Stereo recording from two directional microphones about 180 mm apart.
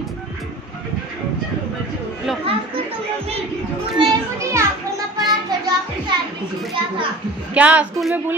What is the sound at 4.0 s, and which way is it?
Children playing, 15° right (ahead or behind).